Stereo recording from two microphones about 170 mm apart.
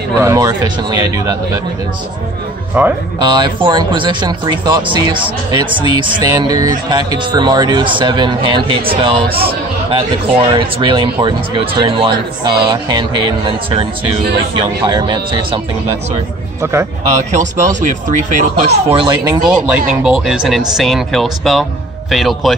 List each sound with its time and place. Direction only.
0.2 s speech: 20° right (ahead or behind)
2.8 s speech: 10° right (ahead or behind)
3.2 s speech: 25° right (ahead or behind)
14.9 s speech: 25° right (ahead or behind)
17.1 s speech: 45° right (ahead or behind)
18.7 s speech: 35° right (ahead or behind)
19.4 s speech: 5° right (ahead or behind)